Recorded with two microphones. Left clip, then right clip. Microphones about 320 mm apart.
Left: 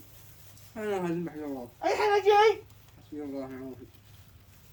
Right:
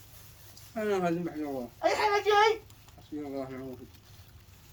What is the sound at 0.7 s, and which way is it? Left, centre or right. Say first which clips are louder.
A woman's voice: right 2 dB; centre.